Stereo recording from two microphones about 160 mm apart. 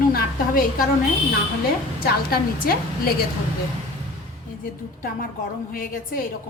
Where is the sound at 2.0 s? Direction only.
70° left (ahead or behind).